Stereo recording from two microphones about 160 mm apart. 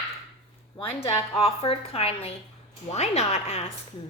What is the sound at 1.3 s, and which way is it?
A woman's voice, 40° left (ahead or behind).